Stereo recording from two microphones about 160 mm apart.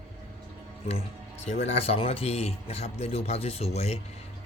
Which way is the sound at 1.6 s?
40° left (ahead or behind).